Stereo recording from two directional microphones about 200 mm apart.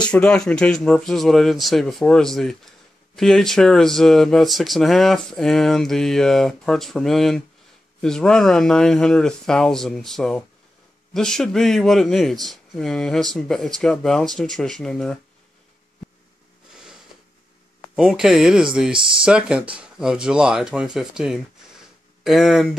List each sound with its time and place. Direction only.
0.0 s speech: 5° left (ahead or behind)
17.9 s speech: centre (ahead or behind)
18.9 s speech: 25° right (ahead or behind)
19.2 s speech: 5° right (ahead or behind)